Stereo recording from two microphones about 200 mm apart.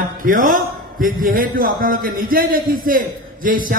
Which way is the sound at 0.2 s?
45° right (ahead or behind).